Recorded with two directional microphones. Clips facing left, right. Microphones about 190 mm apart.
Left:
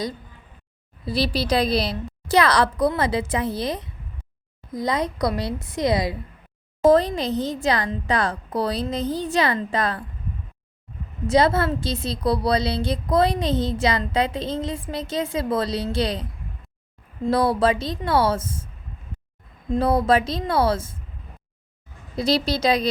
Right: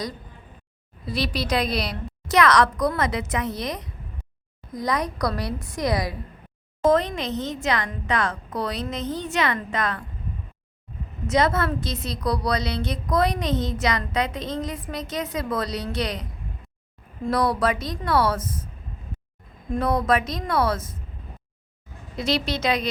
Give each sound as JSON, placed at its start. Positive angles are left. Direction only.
{"t": 1.0, "sound": "a woman's voice", "side_deg": 30}
{"t": 11.3, "sound": "a woman's voice", "side_deg": 30}
{"t": 17.2, "sound": "a woman's voice", "side_deg": 30}
{"t": 19.7, "sound": "a woman's voice", "side_deg": 30}
{"t": 22.1, "sound": "a woman's voice", "side_deg": 35}